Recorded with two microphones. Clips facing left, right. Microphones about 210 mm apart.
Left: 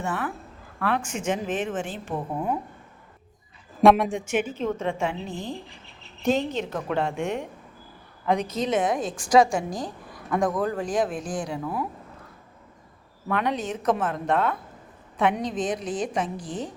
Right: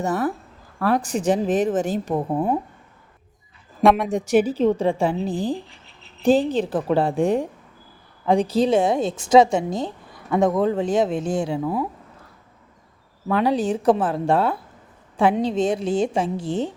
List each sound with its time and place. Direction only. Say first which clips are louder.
0.0 s a woman's voice: right 7 dB; 40° right (ahead or behind)
3.8 s speech: even; centre (ahead or behind)
4.1 s a woman's voice: right 8 dB; 35° right (ahead or behind)
13.2 s a woman's voice: right 6 dB; 30° right (ahead or behind)